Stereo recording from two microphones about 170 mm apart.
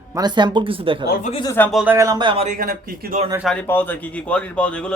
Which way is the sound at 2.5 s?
55° right (ahead or behind).